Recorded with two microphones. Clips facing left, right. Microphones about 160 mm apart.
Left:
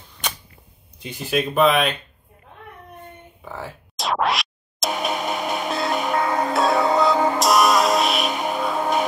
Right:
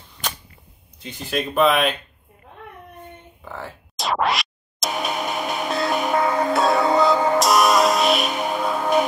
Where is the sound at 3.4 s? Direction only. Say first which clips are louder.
Left 1 dB; centre (ahead or behind).